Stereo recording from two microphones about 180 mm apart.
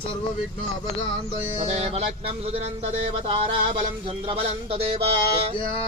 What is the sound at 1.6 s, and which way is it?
Speech, 35° right (ahead or behind).